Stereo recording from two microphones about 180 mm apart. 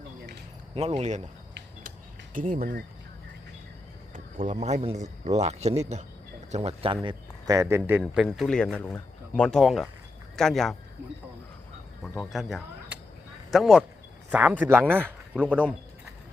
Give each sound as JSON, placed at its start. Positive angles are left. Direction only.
{"t": 0.7, "sound": "speech", "side_deg": -35}
{"t": 2.3, "sound": "speech", "side_deg": -50}
{"t": 4.1, "sound": "speech", "side_deg": -50}
{"t": 8.0, "sound": "speech", "side_deg": 0}
{"t": 12.3, "sound": "speech", "side_deg": 0}